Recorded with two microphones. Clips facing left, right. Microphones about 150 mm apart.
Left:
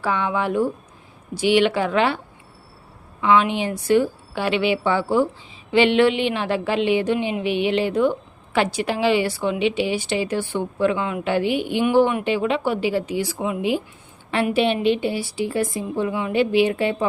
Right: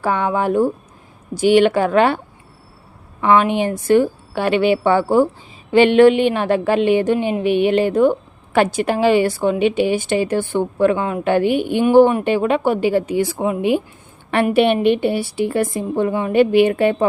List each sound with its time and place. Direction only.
0.0 s a woman's voice: 45° right (ahead or behind)